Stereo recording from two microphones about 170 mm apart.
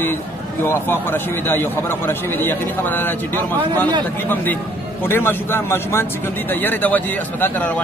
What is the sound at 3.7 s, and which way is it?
Speech, 20° right (ahead or behind).